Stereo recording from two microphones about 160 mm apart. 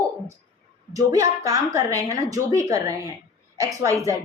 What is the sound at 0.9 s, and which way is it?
A woman's voice, 20° right (ahead or behind).